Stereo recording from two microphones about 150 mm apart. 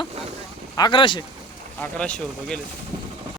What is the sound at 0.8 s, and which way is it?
Speech, 30° left (ahead or behind).